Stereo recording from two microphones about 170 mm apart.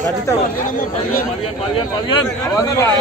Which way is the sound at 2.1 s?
20° left (ahead or behind).